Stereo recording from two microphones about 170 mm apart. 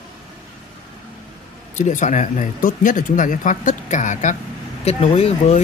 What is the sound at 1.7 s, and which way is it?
Speech, 45° left (ahead or behind).